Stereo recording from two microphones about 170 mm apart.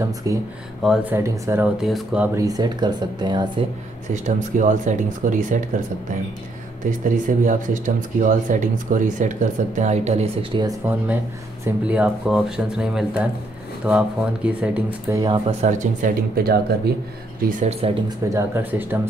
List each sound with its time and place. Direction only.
0.3 s speech: 20° right (ahead or behind)
1.8 s speech: centre (ahead or behind)
2.3 s speech: 20° right (ahead or behind)
4.1 s speech: 45° right (ahead or behind)
6.8 s speech: 50° right (ahead or behind)
10.8 s speech: 10° right (ahead or behind)
15.1 s speech: 20° right (ahead or behind)
15.4 s speech: 45° right (ahead or behind); by 16.9 s 65° right (ahead or behind)
17.5 s speech: 45° right (ahead or behind)
18.0 s speech: 15° right (ahead or behind)